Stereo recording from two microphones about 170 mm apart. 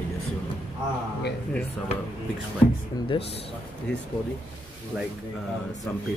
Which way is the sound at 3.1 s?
35° left (ahead or behind).